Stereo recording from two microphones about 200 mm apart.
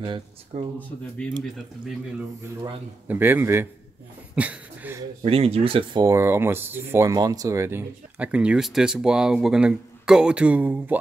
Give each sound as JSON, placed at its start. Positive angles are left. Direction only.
{"t": 0.0, "sound": "speech", "side_deg": -25}
{"t": 0.7, "sound": "speech", "side_deg": 5}
{"t": 3.1, "sound": "speech", "side_deg": -10}
{"t": 5.2, "sound": "speech", "side_deg": -30}